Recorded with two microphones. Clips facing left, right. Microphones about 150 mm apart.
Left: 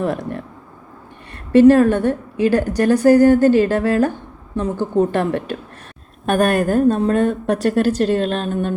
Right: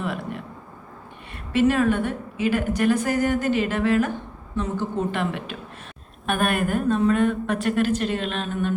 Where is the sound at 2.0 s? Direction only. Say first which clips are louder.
Left 8 dB; 40° left (ahead or behind).